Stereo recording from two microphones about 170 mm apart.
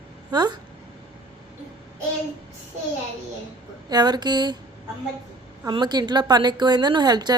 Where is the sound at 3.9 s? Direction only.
25° right (ahead or behind).